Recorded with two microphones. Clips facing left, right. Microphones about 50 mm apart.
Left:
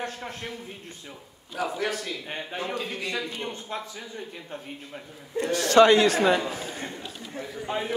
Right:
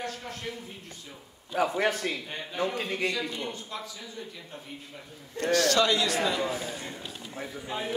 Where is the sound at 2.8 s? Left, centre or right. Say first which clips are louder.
Right 3 dB; right.